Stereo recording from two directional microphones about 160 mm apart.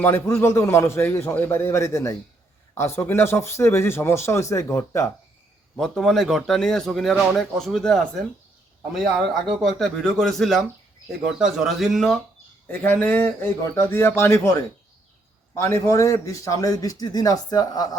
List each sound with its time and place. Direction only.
0.0 s speech: 15° left (ahead or behind)
5.7 s a man's voice: 5° left (ahead or behind)
12.6 s speech: 10° left (ahead or behind)
15.5 s a man's voice: 15° left (ahead or behind)